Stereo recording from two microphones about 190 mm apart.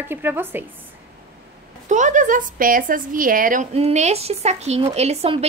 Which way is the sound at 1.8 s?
40° right (ahead or behind).